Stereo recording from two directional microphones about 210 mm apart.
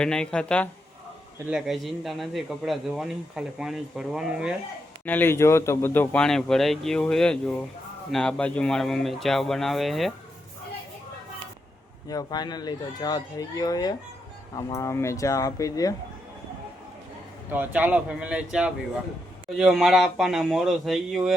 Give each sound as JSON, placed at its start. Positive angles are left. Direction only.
{"t": 0.0, "sound": "a man's voice", "side_deg": 5}
{"t": 5.0, "sound": "a man's voice", "side_deg": 10}
{"t": 12.0, "sound": "speech", "side_deg": 20}
{"t": 17.5, "sound": "a man's voice", "side_deg": -10}